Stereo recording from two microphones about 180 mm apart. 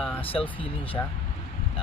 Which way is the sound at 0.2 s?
30° left (ahead or behind).